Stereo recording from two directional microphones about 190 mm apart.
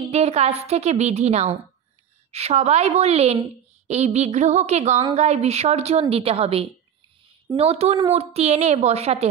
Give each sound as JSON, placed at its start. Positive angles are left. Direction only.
{"t": 0.1, "sound": "a woman's voice", "side_deg": -35}